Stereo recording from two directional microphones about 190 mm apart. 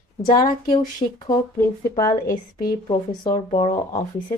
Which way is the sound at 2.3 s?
50° left (ahead or behind).